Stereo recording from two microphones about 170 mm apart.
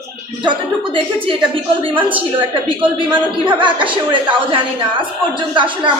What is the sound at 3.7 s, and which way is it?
A woman's voice, 30° right (ahead or behind).